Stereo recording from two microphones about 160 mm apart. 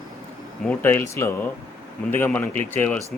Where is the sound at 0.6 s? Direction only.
10° left (ahead or behind).